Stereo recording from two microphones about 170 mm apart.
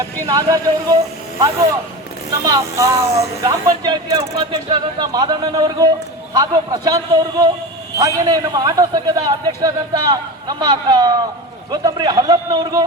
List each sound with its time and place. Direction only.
0.0 s a man's voice: 20° right (ahead or behind)
2.4 s a man's voice: 20° right (ahead or behind)